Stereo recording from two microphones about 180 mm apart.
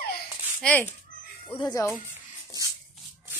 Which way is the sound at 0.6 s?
5° left (ahead or behind).